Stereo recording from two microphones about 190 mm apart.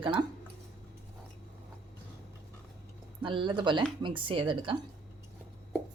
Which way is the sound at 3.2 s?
25° right (ahead or behind).